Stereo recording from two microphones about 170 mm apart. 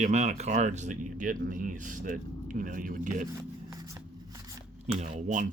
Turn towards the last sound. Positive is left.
turn(degrees=-45)  # may be behind; listen again after turning